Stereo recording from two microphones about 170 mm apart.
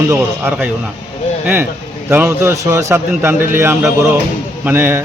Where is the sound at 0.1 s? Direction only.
15° right (ahead or behind).